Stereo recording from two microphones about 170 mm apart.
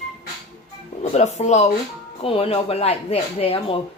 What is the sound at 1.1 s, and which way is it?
A woman's voice, 40° left (ahead or behind).